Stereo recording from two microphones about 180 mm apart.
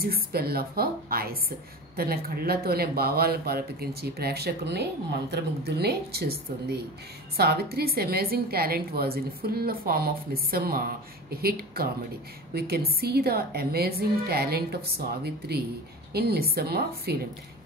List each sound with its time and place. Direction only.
0.0 s a woman's voice: 60° right (ahead or behind)